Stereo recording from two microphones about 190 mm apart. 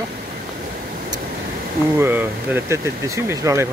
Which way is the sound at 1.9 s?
10° right (ahead or behind).